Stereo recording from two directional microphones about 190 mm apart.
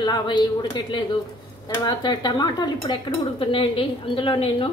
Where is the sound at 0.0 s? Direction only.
25° left (ahead or behind).